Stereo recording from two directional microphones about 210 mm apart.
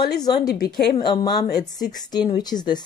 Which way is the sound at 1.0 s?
20° left (ahead or behind).